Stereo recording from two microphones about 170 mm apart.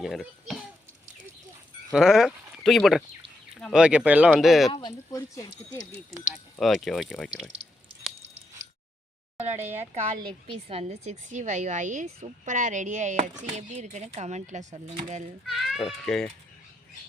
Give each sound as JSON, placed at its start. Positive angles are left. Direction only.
{"t": 0.0, "sound": "a child's voice", "side_deg": 0}
{"t": 1.9, "sound": "speech", "side_deg": 0}
{"t": 4.7, "sound": "speech", "side_deg": 25}
{"t": 6.3, "sound": "speech", "side_deg": 0}
{"t": 9.4, "sound": "a woman's voice", "side_deg": -40}
{"t": 15.4, "sound": "speech", "side_deg": 0}